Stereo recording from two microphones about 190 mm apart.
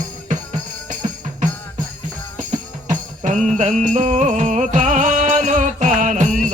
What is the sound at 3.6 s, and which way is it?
Music, 40° right (ahead or behind).